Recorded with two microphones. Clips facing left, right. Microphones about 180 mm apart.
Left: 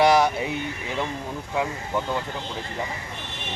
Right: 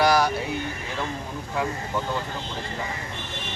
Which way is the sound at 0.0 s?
25° left (ahead or behind).